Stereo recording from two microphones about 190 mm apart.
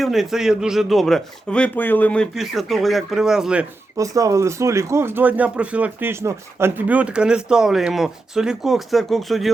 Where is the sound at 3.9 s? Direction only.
15° right (ahead or behind).